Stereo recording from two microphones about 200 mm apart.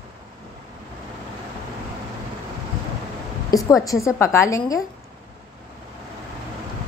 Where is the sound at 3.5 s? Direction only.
15° left (ahead or behind).